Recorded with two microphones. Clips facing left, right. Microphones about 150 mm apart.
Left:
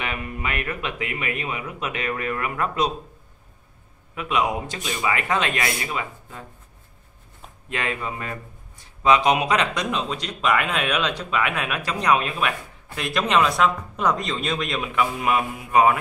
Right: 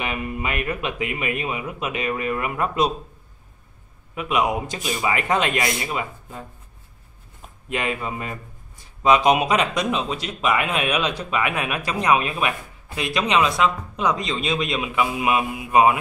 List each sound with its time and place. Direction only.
0.0 s speech: 15° right (ahead or behind)
4.1 s speech: 15° right (ahead or behind)
7.7 s speech: 15° right (ahead or behind)
14.4 s speech: 10° right (ahead or behind)